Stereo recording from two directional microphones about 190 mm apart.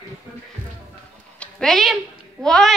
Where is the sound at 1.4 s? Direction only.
Centre (ahead or behind).